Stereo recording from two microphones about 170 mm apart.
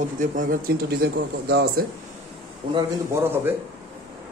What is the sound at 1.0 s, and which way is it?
Speech, 65° right (ahead or behind).